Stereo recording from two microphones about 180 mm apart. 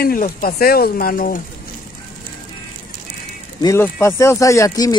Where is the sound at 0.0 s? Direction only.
55° left (ahead or behind).